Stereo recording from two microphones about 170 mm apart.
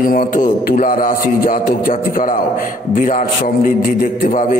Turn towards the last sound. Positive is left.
turn(degrees=50)  # may be behind; listen again after turning